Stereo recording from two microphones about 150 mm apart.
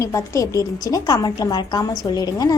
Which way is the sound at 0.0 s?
20° left (ahead or behind).